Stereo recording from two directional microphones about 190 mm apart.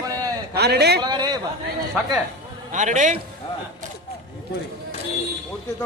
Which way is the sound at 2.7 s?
40° right (ahead or behind).